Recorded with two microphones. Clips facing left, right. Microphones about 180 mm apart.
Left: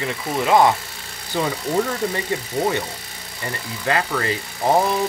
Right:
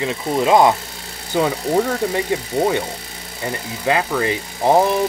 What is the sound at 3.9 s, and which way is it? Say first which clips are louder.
Speech: right 3 dB; 15° right (ahead or behind).